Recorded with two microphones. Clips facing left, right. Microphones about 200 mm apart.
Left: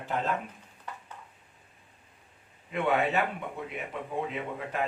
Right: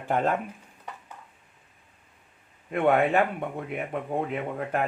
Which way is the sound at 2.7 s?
50° right (ahead or behind).